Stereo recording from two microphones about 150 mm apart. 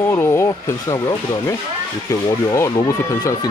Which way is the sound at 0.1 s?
15° left (ahead or behind).